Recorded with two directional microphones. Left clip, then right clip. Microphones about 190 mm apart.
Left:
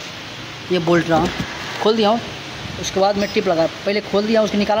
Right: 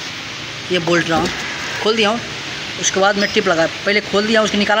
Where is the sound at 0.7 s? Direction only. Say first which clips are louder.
Even; 30° left (ahead or behind).